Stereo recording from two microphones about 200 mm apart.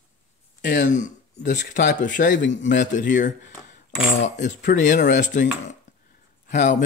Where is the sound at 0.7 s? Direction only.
40° left (ahead or behind).